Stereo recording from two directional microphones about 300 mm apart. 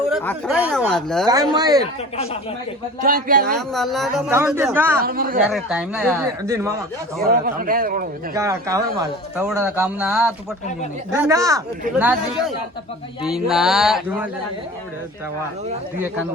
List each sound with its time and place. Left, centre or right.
0.1 s speech: centre
1.3 s speech: centre
3.0 s speech: right
3.7 s speech: centre
5.0 s speech: right
5.5 s speech: centre
7.3 s speech: right
8.3 s speech: centre